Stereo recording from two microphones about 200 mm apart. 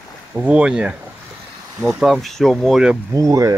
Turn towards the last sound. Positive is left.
turn(degrees=-15)  # may be behind; listen again after turning